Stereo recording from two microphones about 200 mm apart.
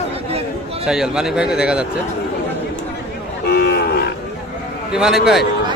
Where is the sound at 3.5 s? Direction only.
55° left (ahead or behind).